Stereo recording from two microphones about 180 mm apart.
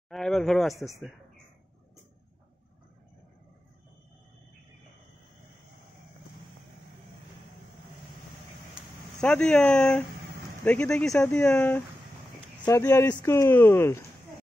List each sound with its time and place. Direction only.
0.1 s speech: centre (ahead or behind)
8.7 s a sound: 5° left (ahead or behind)
10.6 s speech: 5° left (ahead or behind)